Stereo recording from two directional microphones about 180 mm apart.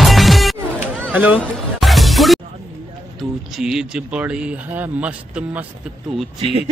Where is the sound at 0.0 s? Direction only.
Centre (ahead or behind).